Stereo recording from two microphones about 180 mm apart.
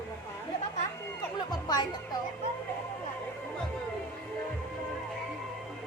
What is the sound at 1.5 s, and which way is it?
Speech, 25° left (ahead or behind).